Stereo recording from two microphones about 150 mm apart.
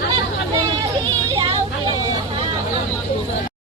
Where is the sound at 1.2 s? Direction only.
30° right (ahead or behind).